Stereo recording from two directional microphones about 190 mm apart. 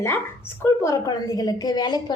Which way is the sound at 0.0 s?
15° left (ahead or behind).